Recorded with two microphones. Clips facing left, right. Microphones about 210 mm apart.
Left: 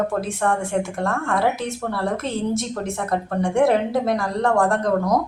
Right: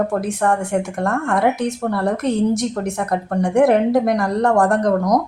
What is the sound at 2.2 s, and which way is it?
A woman's voice, 15° right (ahead or behind).